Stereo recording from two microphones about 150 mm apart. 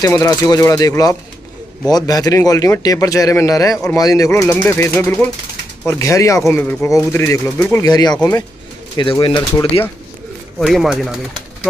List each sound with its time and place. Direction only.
0.0 s a man's voice: 20° left (ahead or behind)
10.6 s speech: centre (ahead or behind)